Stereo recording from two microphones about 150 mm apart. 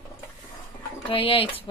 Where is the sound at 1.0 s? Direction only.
35° left (ahead or behind).